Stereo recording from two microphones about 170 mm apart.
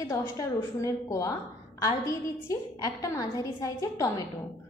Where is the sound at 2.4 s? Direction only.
20° left (ahead or behind).